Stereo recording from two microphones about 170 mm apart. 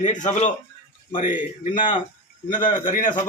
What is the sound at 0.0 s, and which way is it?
Speech, 45° left (ahead or behind).